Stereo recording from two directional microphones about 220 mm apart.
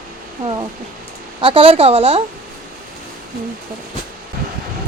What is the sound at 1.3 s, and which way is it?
Speech, 25° right (ahead or behind).